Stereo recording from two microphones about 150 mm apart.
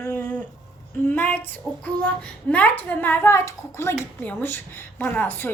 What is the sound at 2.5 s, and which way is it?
A child's voice, 10° left (ahead or behind).